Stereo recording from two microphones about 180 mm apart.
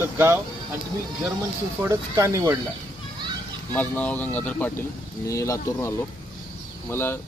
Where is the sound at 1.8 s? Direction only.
15° right (ahead or behind).